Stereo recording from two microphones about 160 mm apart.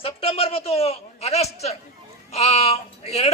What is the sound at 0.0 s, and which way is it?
A man's voice, 35° left (ahead or behind).